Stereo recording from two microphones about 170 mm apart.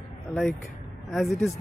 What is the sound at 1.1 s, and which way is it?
Speech, centre (ahead or behind).